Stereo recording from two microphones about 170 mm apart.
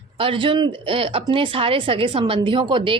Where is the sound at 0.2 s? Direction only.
30° right (ahead or behind).